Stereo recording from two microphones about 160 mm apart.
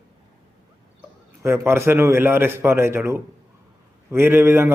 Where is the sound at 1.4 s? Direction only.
15° right (ahead or behind).